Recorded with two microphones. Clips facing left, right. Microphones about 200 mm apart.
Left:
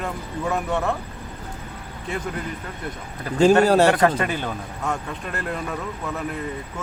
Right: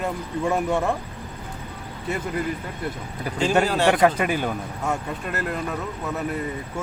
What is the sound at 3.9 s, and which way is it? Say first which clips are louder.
Speech: right 1 dB; 10° right (ahead or behind).